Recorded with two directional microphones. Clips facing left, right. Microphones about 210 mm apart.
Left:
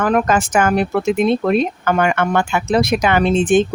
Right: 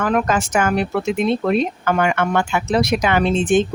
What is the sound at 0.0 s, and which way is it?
A woman's voice, 45° left (ahead or behind).